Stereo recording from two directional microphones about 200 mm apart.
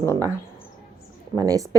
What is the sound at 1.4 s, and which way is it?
Speech, 15° right (ahead or behind).